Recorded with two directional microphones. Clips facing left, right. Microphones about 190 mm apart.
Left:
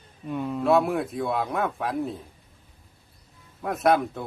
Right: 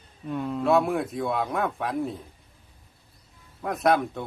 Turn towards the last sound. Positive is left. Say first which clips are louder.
# left 1 dB
turn(degrees=0)  # may be behind; listen again after turning